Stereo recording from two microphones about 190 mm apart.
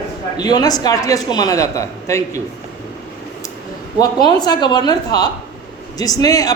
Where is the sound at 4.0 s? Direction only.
20° left (ahead or behind).